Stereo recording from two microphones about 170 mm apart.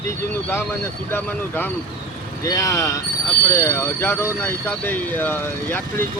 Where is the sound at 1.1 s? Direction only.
10° left (ahead or behind).